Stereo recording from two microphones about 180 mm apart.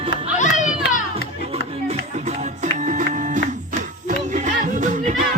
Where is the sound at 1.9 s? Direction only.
40° right (ahead or behind).